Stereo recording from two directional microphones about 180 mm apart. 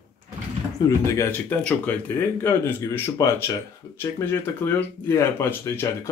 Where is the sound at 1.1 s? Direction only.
15° left (ahead or behind).